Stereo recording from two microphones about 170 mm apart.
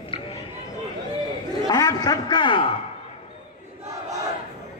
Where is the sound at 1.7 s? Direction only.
20° left (ahead or behind).